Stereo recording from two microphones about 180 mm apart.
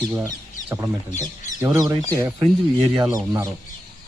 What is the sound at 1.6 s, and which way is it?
Speech, 15° right (ahead or behind).